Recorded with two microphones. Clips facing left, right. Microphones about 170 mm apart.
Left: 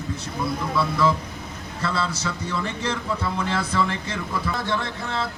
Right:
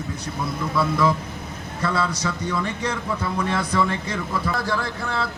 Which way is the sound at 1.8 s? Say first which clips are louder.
Right 2 dB; 30° left (ahead or behind).